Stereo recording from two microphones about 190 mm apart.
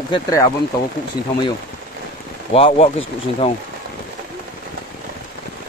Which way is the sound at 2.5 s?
30° left (ahead or behind).